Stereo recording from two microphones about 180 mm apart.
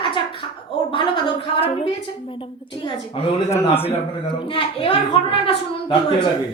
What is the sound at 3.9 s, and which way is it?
A woman's voice, 30° left (ahead or behind).